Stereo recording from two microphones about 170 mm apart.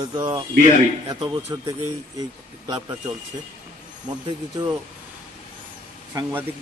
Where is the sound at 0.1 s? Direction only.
20° right (ahead or behind).